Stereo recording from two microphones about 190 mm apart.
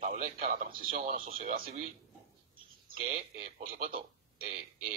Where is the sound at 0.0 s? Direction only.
45° right (ahead or behind).